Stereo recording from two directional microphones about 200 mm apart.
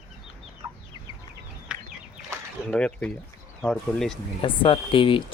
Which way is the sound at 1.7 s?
5° right (ahead or behind).